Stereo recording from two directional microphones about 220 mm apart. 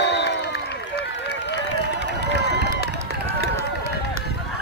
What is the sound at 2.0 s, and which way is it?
Run, 50° right (ahead or behind).